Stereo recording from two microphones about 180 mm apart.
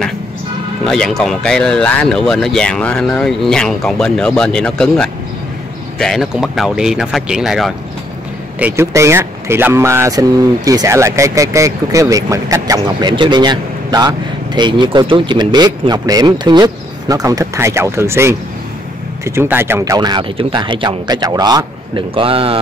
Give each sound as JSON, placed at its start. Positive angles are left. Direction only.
{"t": 0.8, "sound": "speech", "side_deg": 5}